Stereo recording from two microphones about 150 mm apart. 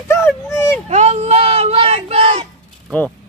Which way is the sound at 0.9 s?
50° right (ahead or behind).